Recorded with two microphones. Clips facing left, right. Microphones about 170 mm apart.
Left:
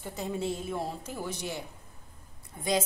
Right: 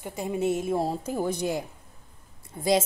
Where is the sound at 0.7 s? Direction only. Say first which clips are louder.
Right 8 dB; 35° right (ahead or behind).